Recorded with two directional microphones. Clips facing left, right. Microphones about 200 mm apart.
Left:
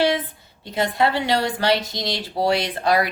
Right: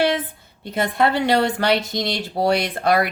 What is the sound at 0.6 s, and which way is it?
A woman's voice, 55° right (ahead or behind).